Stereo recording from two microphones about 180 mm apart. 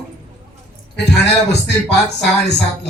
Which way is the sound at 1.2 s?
70° left (ahead or behind).